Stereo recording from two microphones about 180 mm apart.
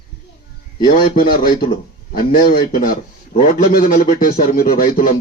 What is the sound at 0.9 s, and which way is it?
A man's voice, 55° left (ahead or behind).